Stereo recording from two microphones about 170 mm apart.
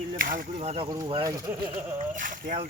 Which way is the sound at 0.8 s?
20° right (ahead or behind).